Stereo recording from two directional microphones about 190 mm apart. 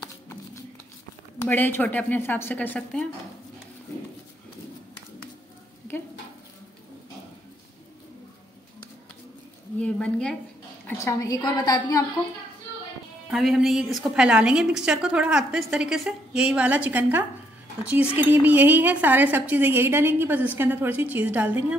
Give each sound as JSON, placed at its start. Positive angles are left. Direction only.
{"t": 1.4, "sound": "a woman's voice", "side_deg": 10}
{"t": 9.8, "sound": "a woman's voice", "side_deg": 5}
{"t": 10.9, "sound": "a woman's voice", "side_deg": 15}
{"t": 13.3, "sound": "a woman's voice", "side_deg": 0}